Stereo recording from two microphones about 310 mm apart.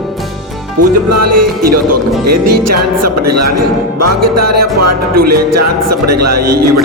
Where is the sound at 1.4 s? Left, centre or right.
Right.